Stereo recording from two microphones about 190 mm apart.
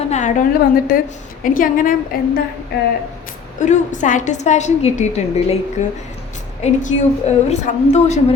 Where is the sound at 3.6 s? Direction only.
40° left (ahead or behind).